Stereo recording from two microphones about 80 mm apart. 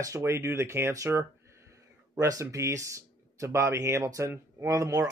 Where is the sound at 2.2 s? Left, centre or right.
Right.